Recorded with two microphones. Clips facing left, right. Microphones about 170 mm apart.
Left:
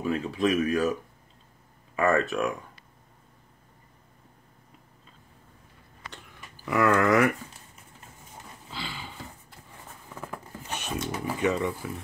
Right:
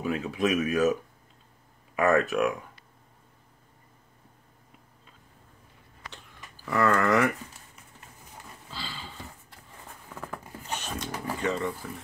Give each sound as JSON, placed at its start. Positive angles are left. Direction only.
{"t": 0.0, "sound": "speech", "side_deg": -5}
{"t": 2.0, "sound": "speech", "side_deg": 0}
{"t": 6.5, "sound": "speech", "side_deg": 15}
{"t": 8.6, "sound": "a sound", "side_deg": 15}
{"t": 10.9, "sound": "speech", "side_deg": 5}